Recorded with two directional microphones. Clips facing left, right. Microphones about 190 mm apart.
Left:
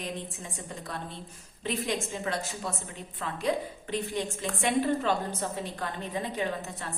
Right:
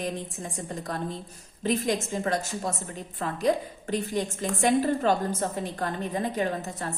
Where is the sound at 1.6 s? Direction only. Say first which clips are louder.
Right 5 dB; 40° right (ahead or behind).